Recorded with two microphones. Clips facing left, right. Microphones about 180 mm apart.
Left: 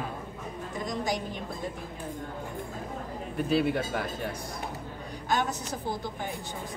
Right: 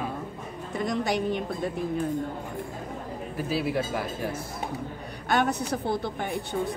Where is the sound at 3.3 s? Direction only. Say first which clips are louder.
Left 2 dB; 5° right (ahead or behind).